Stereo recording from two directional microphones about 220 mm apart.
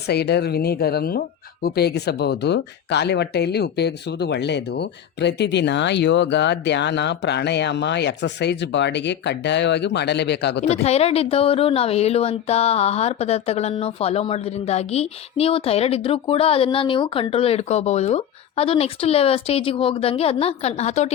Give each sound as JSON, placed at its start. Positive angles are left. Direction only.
{"t": 0.1, "sound": "speech", "side_deg": 50}
{"t": 10.8, "sound": "speech", "side_deg": 30}